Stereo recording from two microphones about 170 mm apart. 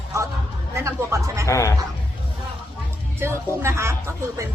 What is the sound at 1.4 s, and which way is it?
Speech, 15° left (ahead or behind).